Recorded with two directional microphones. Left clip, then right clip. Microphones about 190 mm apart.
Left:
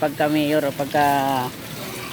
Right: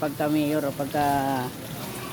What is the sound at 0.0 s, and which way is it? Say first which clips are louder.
Speech: left 5 dB; centre (ahead or behind).